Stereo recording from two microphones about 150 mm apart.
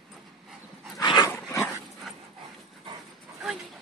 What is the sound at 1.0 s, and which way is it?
Dog, 25° left (ahead or behind).